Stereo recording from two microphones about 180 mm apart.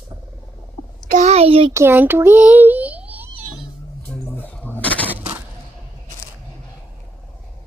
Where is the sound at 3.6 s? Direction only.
10° left (ahead or behind).